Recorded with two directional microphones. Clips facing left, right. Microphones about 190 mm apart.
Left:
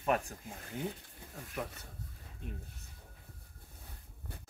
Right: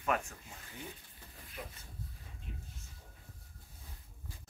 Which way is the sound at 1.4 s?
75° left (ahead or behind).